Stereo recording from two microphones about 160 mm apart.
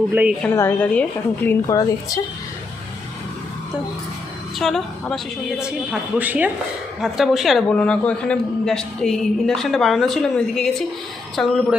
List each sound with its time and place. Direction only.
0.1 s a woman's voice: 10° right (ahead or behind)
0.4 s a woman's voice: 15° left (ahead or behind)
4.5 s a woman's voice: centre (ahead or behind)